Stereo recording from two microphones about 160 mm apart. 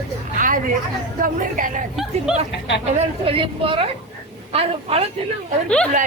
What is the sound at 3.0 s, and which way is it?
A woman's voice, 35° right (ahead or behind).